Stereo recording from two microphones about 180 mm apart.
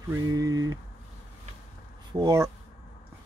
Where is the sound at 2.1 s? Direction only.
20° right (ahead or behind).